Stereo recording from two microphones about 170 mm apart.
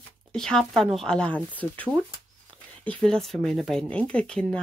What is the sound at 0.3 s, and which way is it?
Speech, 5° left (ahead or behind).